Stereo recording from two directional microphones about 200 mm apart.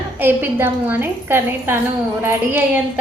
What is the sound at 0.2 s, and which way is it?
A woman's voice, 10° right (ahead or behind).